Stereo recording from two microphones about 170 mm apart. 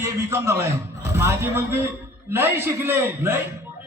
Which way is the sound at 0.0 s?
15° right (ahead or behind).